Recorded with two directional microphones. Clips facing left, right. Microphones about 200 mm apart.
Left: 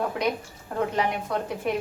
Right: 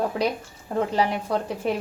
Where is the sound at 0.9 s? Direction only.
30° right (ahead or behind).